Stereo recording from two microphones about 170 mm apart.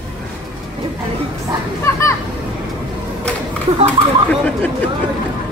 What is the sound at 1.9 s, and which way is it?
Music, 20° left (ahead or behind).